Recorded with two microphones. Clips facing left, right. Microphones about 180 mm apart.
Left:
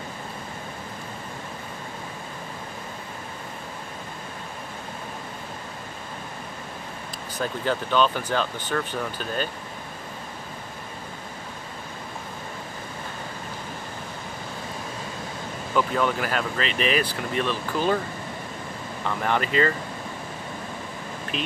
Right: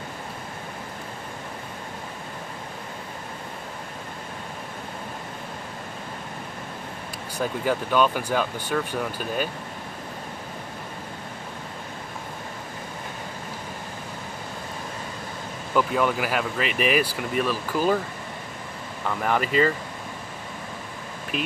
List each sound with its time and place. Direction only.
7.3 s speech: 10° right (ahead or behind)
15.7 s speech: 5° right (ahead or behind)
19.0 s speech: 5° right (ahead or behind)